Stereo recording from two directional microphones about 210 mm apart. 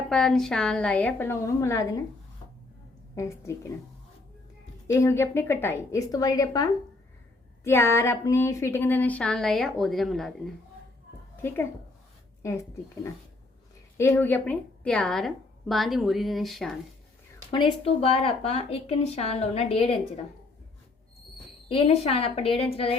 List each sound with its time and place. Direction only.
0.1 s a woman's voice: 5° left (ahead or behind)
3.2 s a woman's voice: 15° left (ahead or behind)
4.9 s a woman's voice: 15° left (ahead or behind)
17.5 s speech: 25° left (ahead or behind)
21.7 s speech: 30° left (ahead or behind)